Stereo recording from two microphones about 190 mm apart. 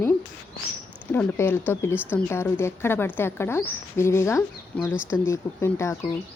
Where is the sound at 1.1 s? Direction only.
10° left (ahead or behind).